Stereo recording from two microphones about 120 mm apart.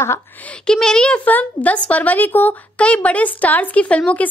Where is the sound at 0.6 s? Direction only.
5° left (ahead or behind).